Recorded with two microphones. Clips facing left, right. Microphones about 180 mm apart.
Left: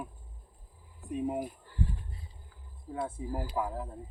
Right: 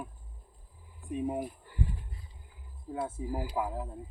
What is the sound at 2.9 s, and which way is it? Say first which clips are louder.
Speech: right 1 dB; 5° right (ahead or behind).